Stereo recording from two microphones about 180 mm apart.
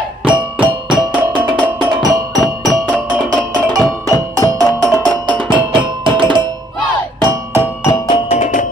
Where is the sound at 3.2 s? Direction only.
20° right (ahead or behind).